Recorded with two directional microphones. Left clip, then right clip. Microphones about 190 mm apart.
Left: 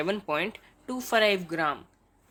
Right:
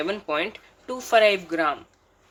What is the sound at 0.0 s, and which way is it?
Speech, 30° left (ahead or behind).